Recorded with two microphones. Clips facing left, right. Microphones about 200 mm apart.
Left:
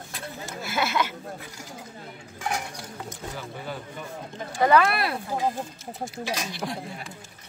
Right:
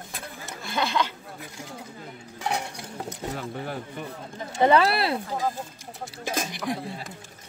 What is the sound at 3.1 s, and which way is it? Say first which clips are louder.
Speech: right 6 dB; 60° right (ahead or behind).